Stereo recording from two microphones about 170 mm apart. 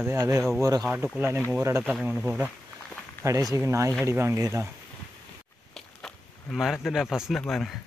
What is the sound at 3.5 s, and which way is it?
Speech, 15° right (ahead or behind).